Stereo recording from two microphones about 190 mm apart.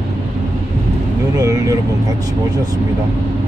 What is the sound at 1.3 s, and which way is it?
Speech, 15° right (ahead or behind).